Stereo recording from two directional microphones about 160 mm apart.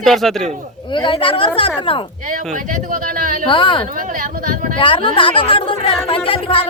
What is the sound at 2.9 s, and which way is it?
Speech, 60° right (ahead or behind).